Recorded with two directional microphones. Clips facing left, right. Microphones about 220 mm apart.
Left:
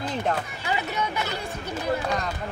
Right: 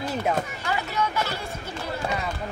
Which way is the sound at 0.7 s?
20° left (ahead or behind).